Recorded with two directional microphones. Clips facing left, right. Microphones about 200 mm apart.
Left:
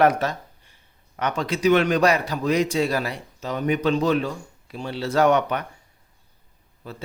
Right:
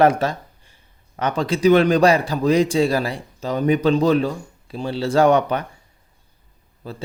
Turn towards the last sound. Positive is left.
turn(degrees=-35)  # may be behind; listen again after turning